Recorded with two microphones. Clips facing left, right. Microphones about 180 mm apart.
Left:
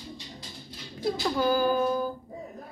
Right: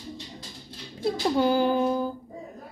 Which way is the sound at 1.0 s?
25° right (ahead or behind).